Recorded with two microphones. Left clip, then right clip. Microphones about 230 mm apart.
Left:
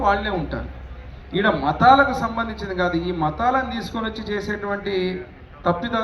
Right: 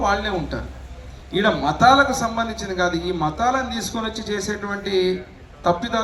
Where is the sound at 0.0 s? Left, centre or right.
Right.